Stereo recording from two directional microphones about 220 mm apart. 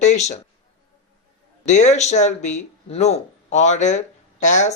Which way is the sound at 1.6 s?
30° left (ahead or behind).